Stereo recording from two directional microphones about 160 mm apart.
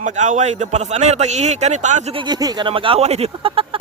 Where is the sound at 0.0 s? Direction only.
50° right (ahead or behind).